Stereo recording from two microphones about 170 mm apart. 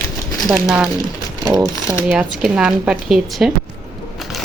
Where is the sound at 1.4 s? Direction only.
25° right (ahead or behind).